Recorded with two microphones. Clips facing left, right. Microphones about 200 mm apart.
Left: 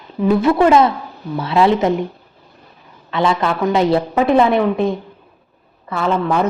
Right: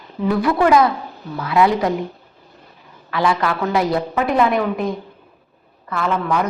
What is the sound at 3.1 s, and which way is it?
A woman's voice, 25° left (ahead or behind).